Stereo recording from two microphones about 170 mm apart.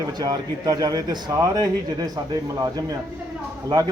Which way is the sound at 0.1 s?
25° right (ahead or behind).